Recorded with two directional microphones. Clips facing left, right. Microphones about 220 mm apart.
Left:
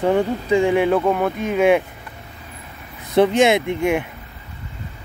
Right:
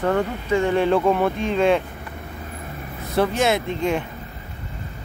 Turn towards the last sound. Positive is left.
turn(degrees=10)  # may be behind; listen again after turning